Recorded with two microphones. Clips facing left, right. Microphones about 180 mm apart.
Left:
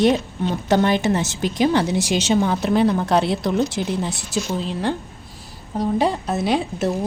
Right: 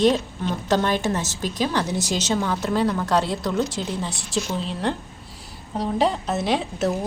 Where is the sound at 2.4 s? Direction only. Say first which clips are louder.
Left 5 dB; 20° left (ahead or behind).